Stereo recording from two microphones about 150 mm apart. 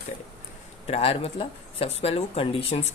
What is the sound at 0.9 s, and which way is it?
Speech, 40° left (ahead or behind).